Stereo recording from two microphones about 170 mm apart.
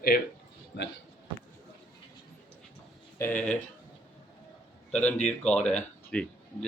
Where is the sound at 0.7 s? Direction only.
80° left.